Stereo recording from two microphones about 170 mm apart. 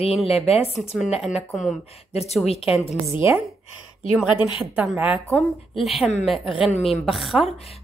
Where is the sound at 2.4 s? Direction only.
35° left (ahead or behind).